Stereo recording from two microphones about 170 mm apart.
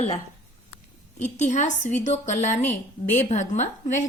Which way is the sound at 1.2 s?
40° left (ahead or behind).